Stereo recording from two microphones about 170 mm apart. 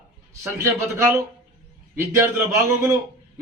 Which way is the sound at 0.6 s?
15° right (ahead or behind).